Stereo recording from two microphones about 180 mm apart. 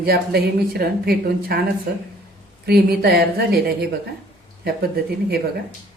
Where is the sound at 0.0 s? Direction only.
60° right (ahead or behind).